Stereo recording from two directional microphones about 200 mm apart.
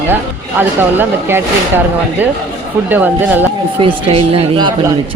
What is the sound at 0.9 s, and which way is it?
Speech, 10° right (ahead or behind).